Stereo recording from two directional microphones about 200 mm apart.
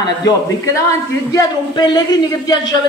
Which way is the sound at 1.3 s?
20° left (ahead or behind).